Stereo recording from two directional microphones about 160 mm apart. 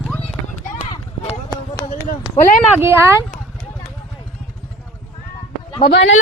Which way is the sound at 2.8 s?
15° right (ahead or behind).